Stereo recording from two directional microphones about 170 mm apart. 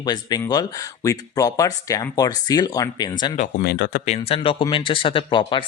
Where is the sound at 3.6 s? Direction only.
70° left (ahead or behind).